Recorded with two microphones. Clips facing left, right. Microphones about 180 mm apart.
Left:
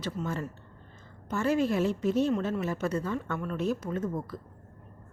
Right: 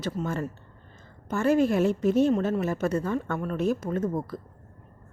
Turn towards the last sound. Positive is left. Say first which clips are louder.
# right 4 dB
turn(degrees=-45)  # may be behind; listen again after turning